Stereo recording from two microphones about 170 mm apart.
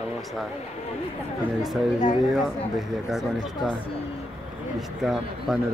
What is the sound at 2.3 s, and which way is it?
Speech, centre (ahead or behind).